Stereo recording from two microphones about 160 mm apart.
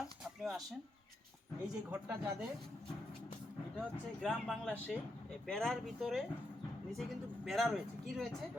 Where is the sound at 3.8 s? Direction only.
5° left (ahead or behind).